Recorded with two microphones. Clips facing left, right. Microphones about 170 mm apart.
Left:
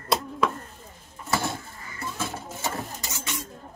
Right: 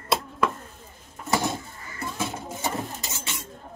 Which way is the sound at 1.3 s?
20° right (ahead or behind).